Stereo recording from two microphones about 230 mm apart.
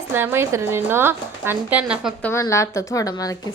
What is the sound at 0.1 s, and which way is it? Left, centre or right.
Speech, centre.